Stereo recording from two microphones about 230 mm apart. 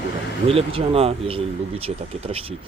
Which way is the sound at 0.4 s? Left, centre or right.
Right.